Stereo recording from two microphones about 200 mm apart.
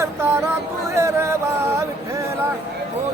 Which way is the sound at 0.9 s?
15° right (ahead or behind).